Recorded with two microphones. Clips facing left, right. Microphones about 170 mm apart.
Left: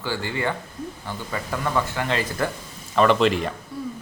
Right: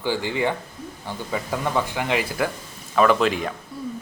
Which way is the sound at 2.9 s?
5° right (ahead or behind).